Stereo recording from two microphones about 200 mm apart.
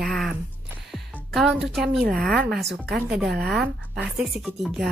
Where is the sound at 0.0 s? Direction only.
Centre (ahead or behind).